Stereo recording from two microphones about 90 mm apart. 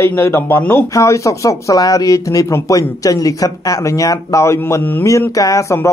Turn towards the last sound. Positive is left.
turn(degrees=35)  # may be behind; listen again after turning